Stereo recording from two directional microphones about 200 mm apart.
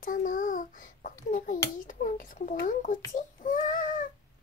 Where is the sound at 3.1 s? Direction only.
40° left (ahead or behind).